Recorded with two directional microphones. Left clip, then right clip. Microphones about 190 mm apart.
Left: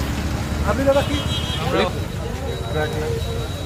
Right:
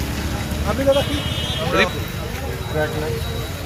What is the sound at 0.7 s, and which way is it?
Speech, 30° right (ahead or behind).